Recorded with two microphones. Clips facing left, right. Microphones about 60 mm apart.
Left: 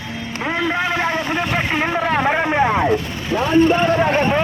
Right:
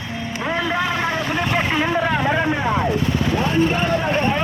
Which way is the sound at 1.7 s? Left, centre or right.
Left.